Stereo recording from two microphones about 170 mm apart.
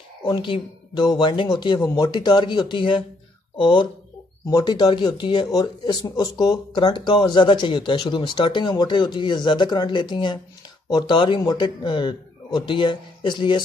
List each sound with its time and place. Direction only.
0.2 s speech: 30° left (ahead or behind)